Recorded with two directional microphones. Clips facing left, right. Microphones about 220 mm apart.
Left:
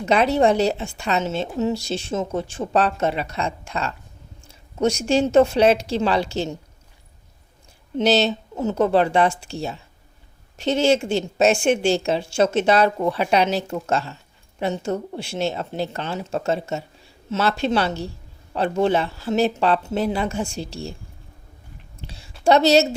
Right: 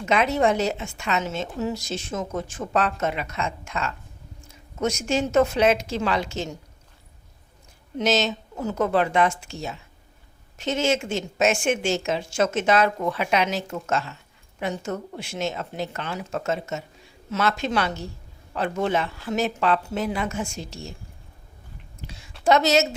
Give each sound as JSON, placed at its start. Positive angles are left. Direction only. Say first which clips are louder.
{"t": 0.0, "sound": "speech", "louder": "left 4 dB", "side_deg": 35}
{"t": 7.9, "sound": "speech", "louder": "left 4 dB", "side_deg": 30}
{"t": 22.0, "sound": "a sound", "louder": "left 1 dB", "side_deg": 30}
{"t": 22.4, "sound": "speech", "louder": "left 4 dB", "side_deg": 30}